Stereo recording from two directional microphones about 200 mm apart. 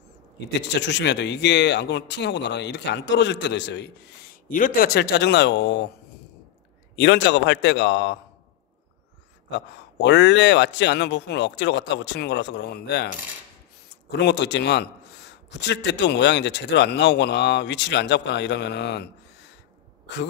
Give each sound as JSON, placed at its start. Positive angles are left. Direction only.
{"t": 0.6, "sound": "a man's voice", "side_deg": 60}
{"t": 4.5, "sound": "a man's voice", "side_deg": 40}
{"t": 7.0, "sound": "a man's voice", "side_deg": 60}
{"t": 10.0, "sound": "a man's voice", "side_deg": 60}
{"t": 14.1, "sound": "a man's voice", "side_deg": 60}